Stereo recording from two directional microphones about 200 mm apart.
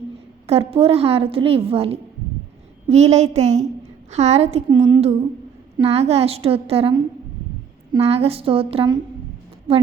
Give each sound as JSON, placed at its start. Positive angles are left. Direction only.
{"t": 0.4, "sound": "a woman's voice", "side_deg": -30}